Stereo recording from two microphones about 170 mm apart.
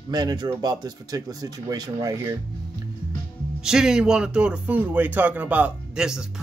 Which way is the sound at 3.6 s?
5° right (ahead or behind).